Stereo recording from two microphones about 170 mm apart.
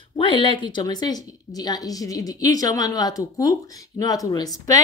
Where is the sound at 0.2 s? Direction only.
30° left (ahead or behind).